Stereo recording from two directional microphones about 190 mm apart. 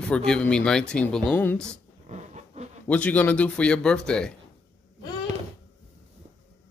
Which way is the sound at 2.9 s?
5° left (ahead or behind).